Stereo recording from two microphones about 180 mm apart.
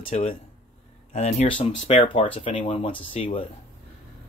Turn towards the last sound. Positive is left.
turn(degrees=30)  # may be behind; listen again after turning